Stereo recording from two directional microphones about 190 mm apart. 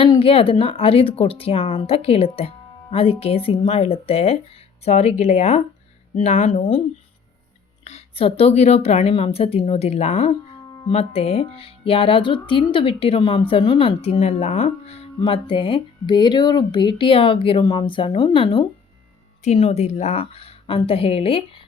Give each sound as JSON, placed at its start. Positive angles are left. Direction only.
{"t": 0.0, "sound": "a woman's voice", "side_deg": 30}
{"t": 7.9, "sound": "a woman's voice", "side_deg": 30}